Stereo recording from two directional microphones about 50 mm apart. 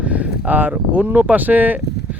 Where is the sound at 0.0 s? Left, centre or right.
Right.